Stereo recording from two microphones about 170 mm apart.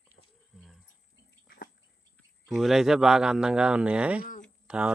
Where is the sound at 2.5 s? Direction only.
Centre (ahead or behind).